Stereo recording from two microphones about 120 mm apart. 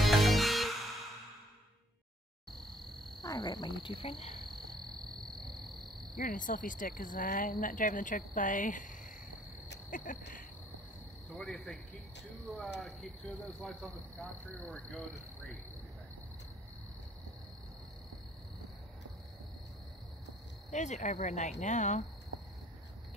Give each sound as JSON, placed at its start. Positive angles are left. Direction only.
{"t": 0.0, "sound": "music", "side_deg": 0}
{"t": 3.2, "sound": "frog", "side_deg": 40}
{"t": 6.3, "sound": "speech", "side_deg": 90}
{"t": 11.3, "sound": "speech", "side_deg": 5}
{"t": 20.7, "sound": "speech", "side_deg": 85}